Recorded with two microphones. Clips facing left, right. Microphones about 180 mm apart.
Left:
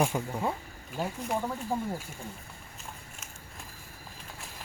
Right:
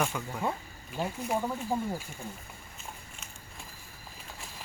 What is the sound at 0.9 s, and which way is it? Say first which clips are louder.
Speech: even; centre (ahead or behind).